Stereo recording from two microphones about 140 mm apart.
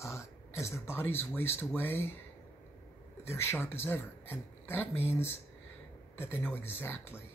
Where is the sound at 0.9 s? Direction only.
15° left (ahead or behind).